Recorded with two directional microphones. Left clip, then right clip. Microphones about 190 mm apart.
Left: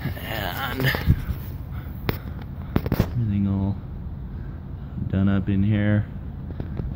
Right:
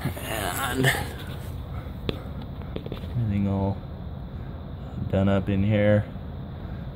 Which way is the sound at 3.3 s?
10° right (ahead or behind).